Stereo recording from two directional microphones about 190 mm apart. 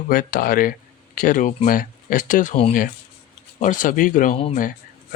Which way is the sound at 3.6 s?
45° left (ahead or behind).